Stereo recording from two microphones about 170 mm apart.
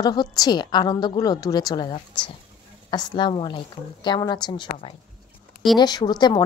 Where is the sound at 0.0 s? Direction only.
25° left (ahead or behind).